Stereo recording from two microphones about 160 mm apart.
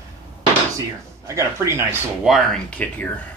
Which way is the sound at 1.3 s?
20° right (ahead or behind).